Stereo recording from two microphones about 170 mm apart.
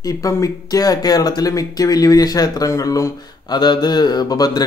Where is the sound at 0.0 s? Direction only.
20° left (ahead or behind).